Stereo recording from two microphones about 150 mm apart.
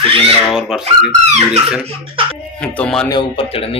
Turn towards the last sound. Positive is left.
turn(degrees=35)  # may be behind; listen again after turning